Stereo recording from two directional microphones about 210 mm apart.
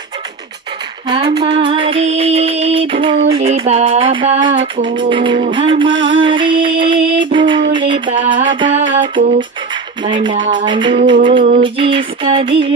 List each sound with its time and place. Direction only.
1.0 s music: 25° right (ahead or behind)
10.0 s music: 25° right (ahead or behind)